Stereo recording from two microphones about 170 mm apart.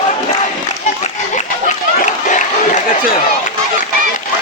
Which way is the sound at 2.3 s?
50° left (ahead or behind).